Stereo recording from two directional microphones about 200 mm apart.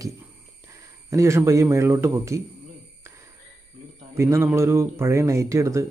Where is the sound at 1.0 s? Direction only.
15° right (ahead or behind).